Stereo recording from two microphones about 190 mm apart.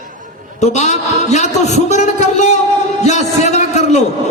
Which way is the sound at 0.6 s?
35° left (ahead or behind).